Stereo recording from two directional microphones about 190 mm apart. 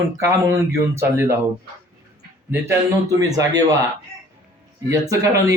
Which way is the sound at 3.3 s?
20° right (ahead or behind).